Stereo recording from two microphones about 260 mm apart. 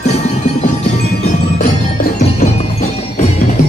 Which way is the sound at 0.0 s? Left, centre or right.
Left.